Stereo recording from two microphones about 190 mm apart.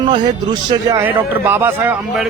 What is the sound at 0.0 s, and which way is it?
A man's voice, 25° right (ahead or behind).